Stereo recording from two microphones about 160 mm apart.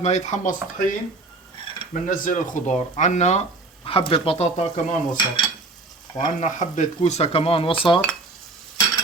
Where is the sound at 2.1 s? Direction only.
55° left (ahead or behind).